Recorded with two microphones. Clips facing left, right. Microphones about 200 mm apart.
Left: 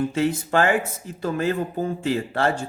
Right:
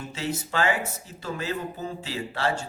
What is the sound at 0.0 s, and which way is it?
Speech, 55° left (ahead or behind).